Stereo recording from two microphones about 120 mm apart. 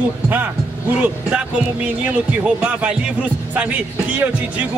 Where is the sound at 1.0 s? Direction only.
10° right (ahead or behind).